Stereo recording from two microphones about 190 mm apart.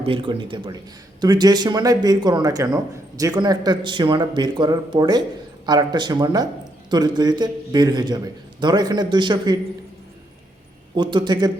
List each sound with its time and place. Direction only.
0.0 s speech: 25° right (ahead or behind)
10.9 s speech: 25° right (ahead or behind)